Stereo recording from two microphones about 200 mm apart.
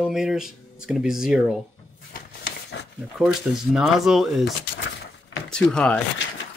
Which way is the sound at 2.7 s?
65° left (ahead or behind).